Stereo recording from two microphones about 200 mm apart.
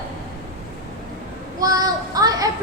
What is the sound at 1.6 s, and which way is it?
Speech, 20° right (ahead or behind).